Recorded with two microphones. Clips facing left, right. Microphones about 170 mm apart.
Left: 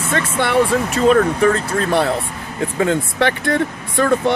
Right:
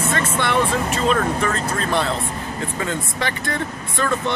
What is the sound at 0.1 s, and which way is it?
Speech, 55° left (ahead or behind).